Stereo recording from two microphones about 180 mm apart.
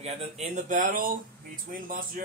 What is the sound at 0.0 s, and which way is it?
Speech, 35° right (ahead or behind).